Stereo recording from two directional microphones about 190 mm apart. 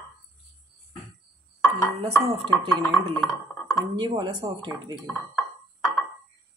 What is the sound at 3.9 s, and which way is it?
Speech, 25° right (ahead or behind).